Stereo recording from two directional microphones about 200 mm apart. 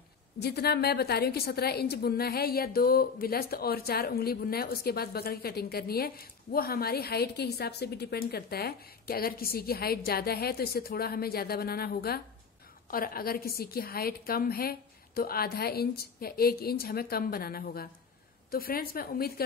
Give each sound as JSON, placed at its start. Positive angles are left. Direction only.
{"t": 0.4, "sound": "a woman's voice", "side_deg": 55}